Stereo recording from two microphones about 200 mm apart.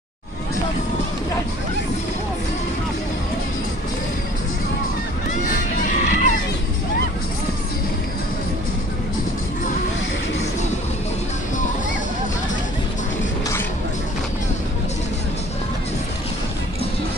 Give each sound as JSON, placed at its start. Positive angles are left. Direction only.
{"t": 5.9, "sound": "music", "side_deg": 40}